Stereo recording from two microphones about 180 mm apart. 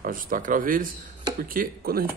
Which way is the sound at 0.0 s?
50° right (ahead or behind).